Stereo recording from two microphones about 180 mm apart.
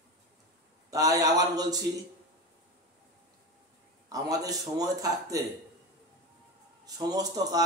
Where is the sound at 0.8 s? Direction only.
20° right (ahead or behind).